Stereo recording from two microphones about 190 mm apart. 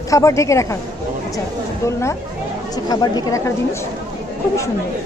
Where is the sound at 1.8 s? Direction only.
15° left (ahead or behind).